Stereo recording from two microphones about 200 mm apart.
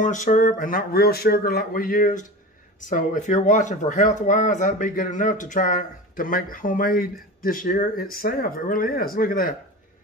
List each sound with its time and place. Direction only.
0.0 s speech: 40° left (ahead or behind)